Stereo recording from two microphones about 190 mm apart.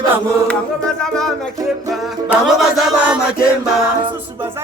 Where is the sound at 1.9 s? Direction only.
Centre (ahead or behind).